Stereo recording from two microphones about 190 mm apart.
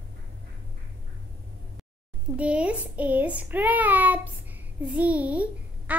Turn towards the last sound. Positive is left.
turn(degrees=-5)  # may be behind; listen again after turning